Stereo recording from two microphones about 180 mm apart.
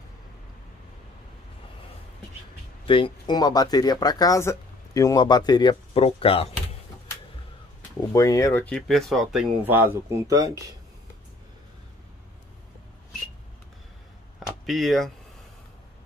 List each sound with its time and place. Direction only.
2.9 s speech: 25° left (ahead or behind)
8.1 s speech: 20° left (ahead or behind)
8.6 s speech: centre (ahead or behind); by 10.6 s 20° right (ahead or behind)
14.7 s speech: centre (ahead or behind)